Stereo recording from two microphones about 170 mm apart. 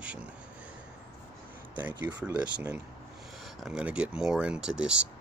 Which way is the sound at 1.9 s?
25° right (ahead or behind).